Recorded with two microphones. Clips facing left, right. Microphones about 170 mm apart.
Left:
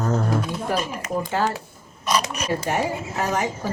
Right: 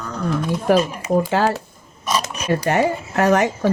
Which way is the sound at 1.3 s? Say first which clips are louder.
Right 5 dB; 80° right.